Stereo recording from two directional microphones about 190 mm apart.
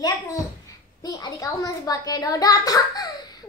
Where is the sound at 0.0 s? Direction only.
20° left (ahead or behind).